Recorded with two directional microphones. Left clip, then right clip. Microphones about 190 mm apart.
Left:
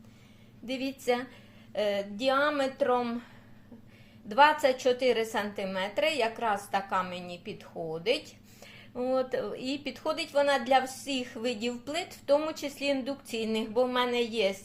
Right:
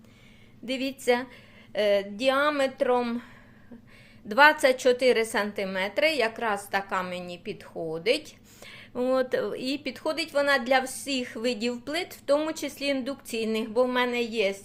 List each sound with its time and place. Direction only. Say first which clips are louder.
0.6 s a woman's voice: right 4 dB; 35° right (ahead or behind)
4.3 s a woman's voice: right 3 dB; 40° right (ahead or behind); by 14.5 s 20° right (ahead or behind)